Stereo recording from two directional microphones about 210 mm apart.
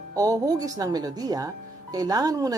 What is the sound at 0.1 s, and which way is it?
Speech, 15° right (ahead or behind).